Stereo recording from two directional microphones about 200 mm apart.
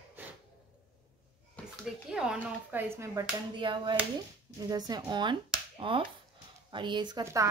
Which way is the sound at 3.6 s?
25° right (ahead or behind).